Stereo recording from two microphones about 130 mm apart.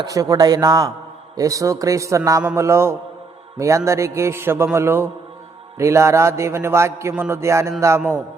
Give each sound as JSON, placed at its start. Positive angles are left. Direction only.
{"t": 0.0, "sound": "a man's voice", "side_deg": -25}